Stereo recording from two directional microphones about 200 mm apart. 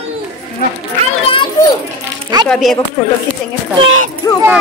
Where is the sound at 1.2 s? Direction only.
25° left (ahead or behind).